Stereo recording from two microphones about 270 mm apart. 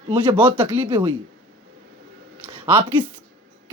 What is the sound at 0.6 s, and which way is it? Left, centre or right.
Speech, centre.